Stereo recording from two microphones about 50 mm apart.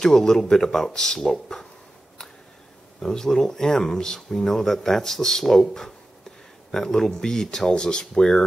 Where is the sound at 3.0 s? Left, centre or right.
Centre.